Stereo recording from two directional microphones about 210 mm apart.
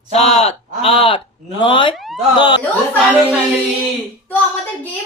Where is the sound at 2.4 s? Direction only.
20° left (ahead or behind).